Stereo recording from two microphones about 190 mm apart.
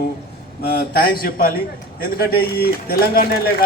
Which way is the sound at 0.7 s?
55° left (ahead or behind).